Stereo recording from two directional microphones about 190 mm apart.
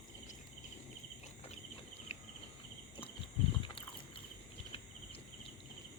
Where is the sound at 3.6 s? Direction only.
30° left (ahead or behind).